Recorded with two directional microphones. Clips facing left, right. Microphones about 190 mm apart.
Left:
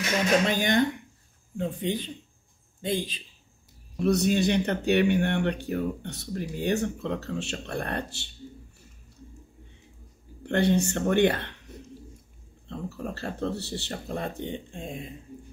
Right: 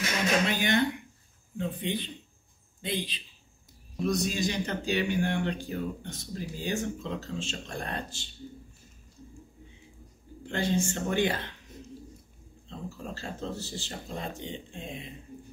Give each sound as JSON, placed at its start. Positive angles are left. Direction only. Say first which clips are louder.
{"t": 0.5, "sound": "speech", "louder": "left 3 dB", "side_deg": 45}
{"t": 4.0, "sound": "speech", "louder": "left 6 dB", "side_deg": 65}
{"t": 10.4, "sound": "speech", "louder": "left 5 dB", "side_deg": 65}
{"t": 12.6, "sound": "speech", "louder": "left 5 dB", "side_deg": 65}